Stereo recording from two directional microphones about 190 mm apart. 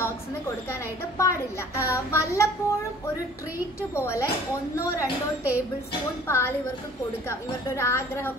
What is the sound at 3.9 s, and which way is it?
Speech, 15° left (ahead or behind).